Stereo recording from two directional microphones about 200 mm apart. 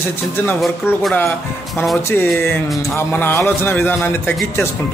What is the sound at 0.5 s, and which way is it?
Speech, centre (ahead or behind).